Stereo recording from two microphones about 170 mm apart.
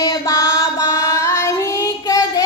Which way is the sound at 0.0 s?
20° left (ahead or behind).